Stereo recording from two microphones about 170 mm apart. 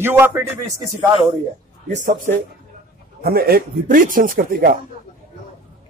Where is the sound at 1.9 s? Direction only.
45° right (ahead or behind).